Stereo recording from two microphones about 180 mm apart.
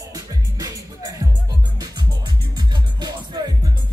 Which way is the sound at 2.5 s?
25° right (ahead or behind).